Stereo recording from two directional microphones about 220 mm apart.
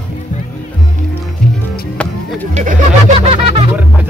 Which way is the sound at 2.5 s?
35° right (ahead or behind).